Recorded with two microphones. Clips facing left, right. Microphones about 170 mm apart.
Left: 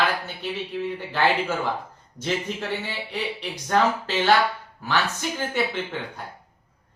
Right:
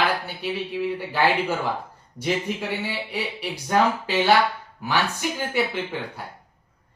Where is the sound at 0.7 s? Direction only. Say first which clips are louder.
Right 2 dB; 10° right (ahead or behind).